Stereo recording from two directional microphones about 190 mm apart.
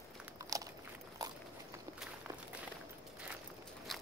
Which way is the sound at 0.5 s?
20° right (ahead or behind).